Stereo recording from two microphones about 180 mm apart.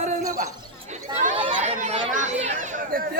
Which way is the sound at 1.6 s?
40° right (ahead or behind).